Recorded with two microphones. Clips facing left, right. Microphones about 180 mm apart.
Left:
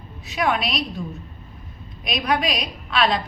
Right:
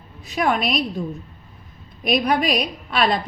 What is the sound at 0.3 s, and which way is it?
Speech, 45° right (ahead or behind).